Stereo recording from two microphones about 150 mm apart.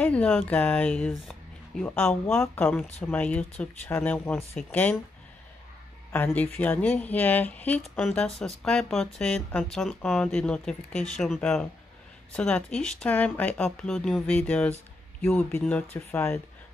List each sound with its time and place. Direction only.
0.0 s speech: 10° left (ahead or behind)
6.1 s speech: 10° left (ahead or behind)